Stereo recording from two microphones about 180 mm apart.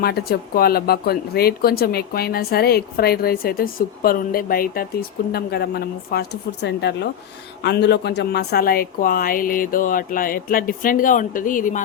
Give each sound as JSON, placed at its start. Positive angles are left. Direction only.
{"t": 0.0, "sound": "a woman's voice", "side_deg": 60}